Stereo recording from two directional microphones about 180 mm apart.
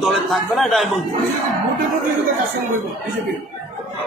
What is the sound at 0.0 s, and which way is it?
Speech, centre (ahead or behind).